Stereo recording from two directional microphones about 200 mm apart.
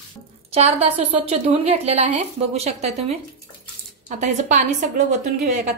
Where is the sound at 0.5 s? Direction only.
30° right (ahead or behind).